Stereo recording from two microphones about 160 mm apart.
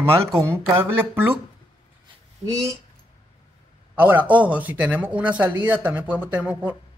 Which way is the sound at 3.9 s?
10° right (ahead or behind).